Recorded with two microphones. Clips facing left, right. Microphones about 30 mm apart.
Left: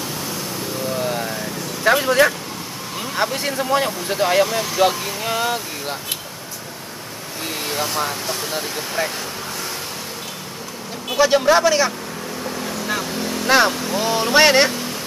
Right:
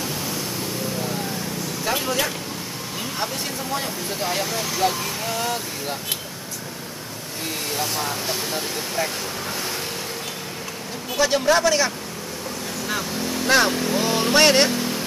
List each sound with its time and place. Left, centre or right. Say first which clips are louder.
1.0 s vehicle: left 4 dB; left
2.0 s speech: left 8 dB; left
3.2 s speech: left 9 dB; left
4.5 s a man's voice: left 4 dB; centre
4.7 s speech: left 5 dB; left
7.6 s a man's voice: left 4 dB; centre
11.1 s a man's voice: left 4 dB; centre